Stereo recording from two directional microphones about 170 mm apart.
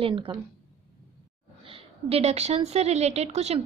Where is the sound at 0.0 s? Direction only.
30° right (ahead or behind).